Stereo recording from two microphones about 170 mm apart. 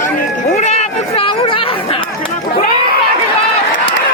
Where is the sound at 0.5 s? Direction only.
40° left (ahead or behind).